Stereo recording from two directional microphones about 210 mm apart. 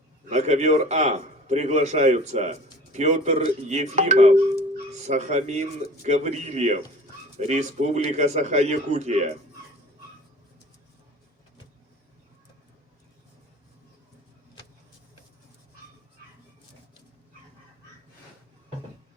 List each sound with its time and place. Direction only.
0.3 s a man's voice: 35° right (ahead or behind)